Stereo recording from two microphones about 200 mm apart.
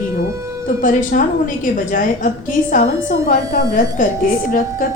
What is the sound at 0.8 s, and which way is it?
A woman's voice, 40° left (ahead or behind).